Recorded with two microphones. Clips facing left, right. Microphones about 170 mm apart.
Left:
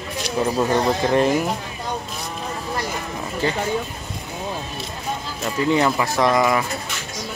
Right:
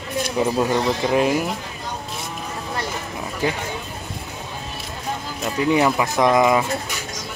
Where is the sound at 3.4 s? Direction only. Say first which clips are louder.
Even; 10° right (ahead or behind).